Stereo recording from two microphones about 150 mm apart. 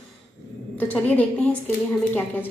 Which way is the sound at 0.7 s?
10° left (ahead or behind).